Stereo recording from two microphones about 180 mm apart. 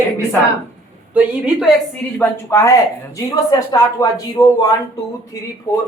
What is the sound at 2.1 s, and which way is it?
Speech, 15° left (ahead or behind).